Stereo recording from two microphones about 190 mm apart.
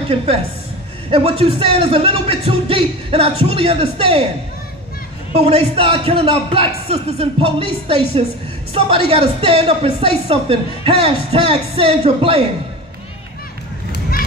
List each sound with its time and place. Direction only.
1.1 s speech: 30° right (ahead or behind)
5.3 s a woman's voice: 30° right (ahead or behind)